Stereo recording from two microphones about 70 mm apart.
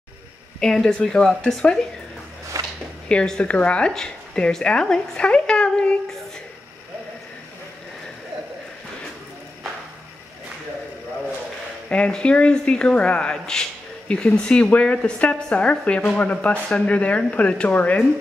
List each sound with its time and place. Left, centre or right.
0.6 s speech: centre
2.5 s a sound: right
3.1 s a woman's voice: centre
11.9 s speech: centre